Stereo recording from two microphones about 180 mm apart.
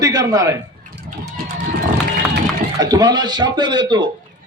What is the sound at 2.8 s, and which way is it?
Speech, 20° right (ahead or behind).